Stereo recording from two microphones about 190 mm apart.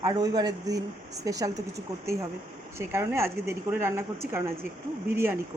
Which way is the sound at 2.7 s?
15° right (ahead or behind).